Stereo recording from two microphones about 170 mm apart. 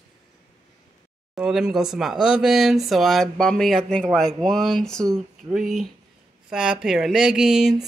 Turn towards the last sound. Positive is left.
turn(degrees=-5)  # may be behind; listen again after turning